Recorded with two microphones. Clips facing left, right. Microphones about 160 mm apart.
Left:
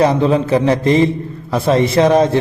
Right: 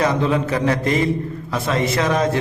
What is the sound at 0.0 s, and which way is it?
A man's voice, 30° left (ahead or behind).